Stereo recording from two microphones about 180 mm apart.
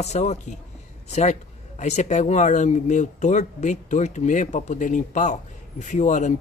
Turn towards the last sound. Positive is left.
turn(degrees=40)  # may be behind; listen again after turning